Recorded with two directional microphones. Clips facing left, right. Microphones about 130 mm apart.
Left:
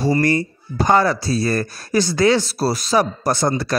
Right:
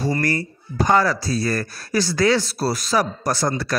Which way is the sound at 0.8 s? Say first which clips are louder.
Left 2 dB; 25° left (ahead or behind).